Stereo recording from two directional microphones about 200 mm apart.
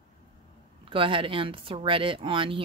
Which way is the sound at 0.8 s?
25° right (ahead or behind).